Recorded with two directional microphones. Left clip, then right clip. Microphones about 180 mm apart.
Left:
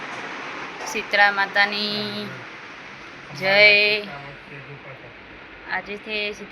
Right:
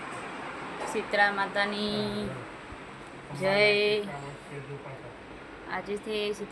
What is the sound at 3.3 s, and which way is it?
Speech, 10° right (ahead or behind).